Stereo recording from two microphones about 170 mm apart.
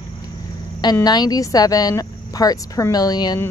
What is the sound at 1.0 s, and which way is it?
Speech, 25° left (ahead or behind).